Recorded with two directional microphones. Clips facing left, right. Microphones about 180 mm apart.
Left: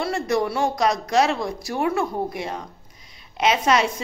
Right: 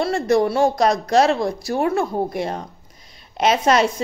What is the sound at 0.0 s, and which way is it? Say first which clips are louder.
Speech: right 5 dB; 30° right (ahead or behind).